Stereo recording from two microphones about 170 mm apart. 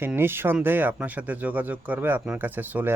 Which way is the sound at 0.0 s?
15° right (ahead or behind).